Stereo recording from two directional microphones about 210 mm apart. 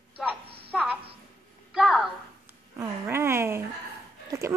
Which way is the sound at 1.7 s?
Centre (ahead or behind).